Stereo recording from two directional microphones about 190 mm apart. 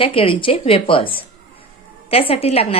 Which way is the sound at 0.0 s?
30° left (ahead or behind).